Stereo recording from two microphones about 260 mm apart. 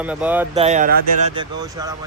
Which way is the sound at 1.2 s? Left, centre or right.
Centre.